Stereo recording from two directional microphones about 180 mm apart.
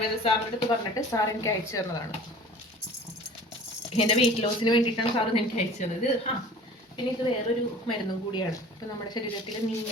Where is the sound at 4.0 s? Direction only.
35° left (ahead or behind).